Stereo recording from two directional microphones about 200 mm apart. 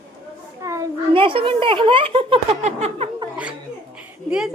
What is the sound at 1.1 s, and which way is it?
Speech, 25° right (ahead or behind).